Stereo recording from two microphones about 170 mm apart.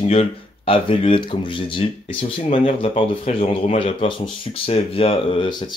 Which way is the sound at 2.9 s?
35° left (ahead or behind).